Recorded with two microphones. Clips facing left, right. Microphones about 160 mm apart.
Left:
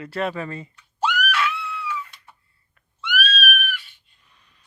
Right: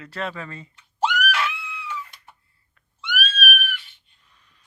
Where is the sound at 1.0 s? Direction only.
25° right (ahead or behind).